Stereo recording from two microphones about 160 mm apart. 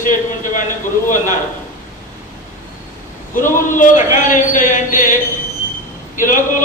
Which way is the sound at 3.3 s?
55° left (ahead or behind).